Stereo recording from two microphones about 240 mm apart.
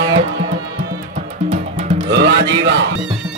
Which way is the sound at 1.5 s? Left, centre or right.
Right.